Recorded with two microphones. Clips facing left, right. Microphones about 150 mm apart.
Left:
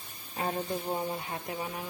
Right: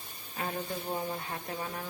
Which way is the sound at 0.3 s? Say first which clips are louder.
Left 3 dB; 30° left (ahead or behind).